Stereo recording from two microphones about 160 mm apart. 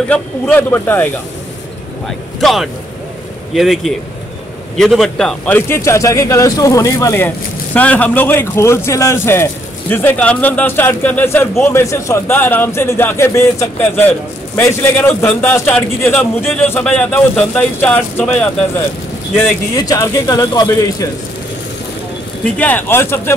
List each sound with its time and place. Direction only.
0.1 s speech: 10° left (ahead or behind)
2.0 s a man's voice: centre (ahead or behind)
5.7 s speech: 20° left (ahead or behind)
19.3 s speech: 25° left (ahead or behind)
22.6 s speech: 10° left (ahead or behind)